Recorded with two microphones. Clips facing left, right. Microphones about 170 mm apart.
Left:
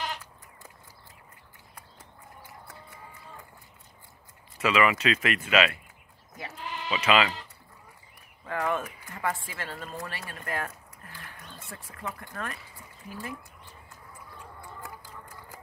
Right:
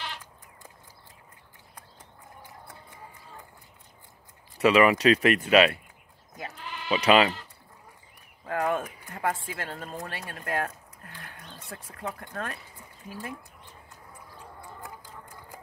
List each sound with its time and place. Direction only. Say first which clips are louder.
4.6 s speech: right 5 dB; 35° right (ahead or behind)
6.4 s bleat: left 1 dB; 40° right (ahead or behind)
8.5 s speech: right 2 dB; 45° right (ahead or behind)